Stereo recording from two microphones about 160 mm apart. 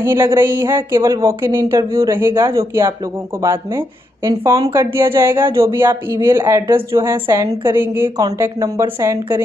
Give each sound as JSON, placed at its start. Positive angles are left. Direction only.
{"t": 0.0, "sound": "speech", "side_deg": -15}